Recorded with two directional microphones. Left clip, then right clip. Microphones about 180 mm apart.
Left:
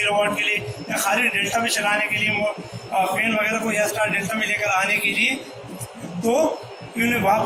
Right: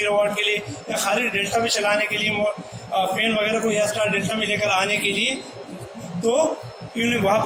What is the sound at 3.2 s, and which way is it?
A man's voice, 40° right (ahead or behind).